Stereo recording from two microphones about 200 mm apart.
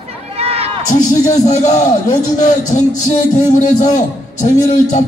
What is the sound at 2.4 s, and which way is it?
A man's voice, 40° left (ahead or behind).